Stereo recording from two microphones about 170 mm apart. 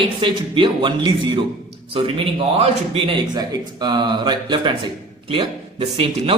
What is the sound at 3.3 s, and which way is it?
Speech, 25° right (ahead or behind).